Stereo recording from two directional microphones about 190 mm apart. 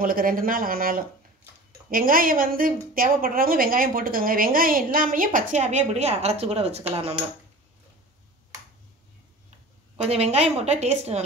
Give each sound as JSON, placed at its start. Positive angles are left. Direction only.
{"t": 0.0, "sound": "a woman's voice", "side_deg": -50}
{"t": 10.0, "sound": "a woman's voice", "side_deg": -35}